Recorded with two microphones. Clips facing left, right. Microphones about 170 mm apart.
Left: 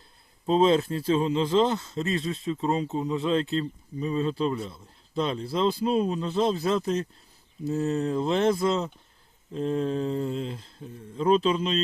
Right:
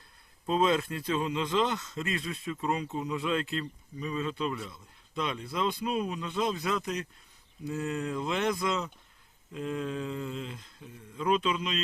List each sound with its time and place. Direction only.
0.4 s speech: 25° left (ahead or behind)